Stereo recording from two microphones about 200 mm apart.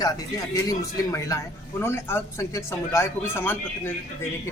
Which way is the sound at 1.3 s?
15° left (ahead or behind).